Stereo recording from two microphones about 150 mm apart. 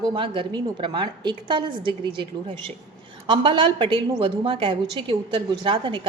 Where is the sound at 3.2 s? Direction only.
35° right (ahead or behind).